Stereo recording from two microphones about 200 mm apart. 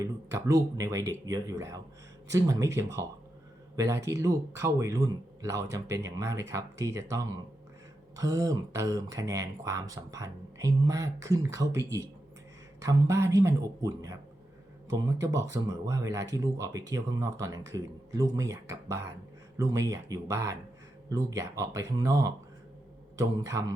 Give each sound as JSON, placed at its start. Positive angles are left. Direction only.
{"t": 0.0, "sound": "speech", "side_deg": -15}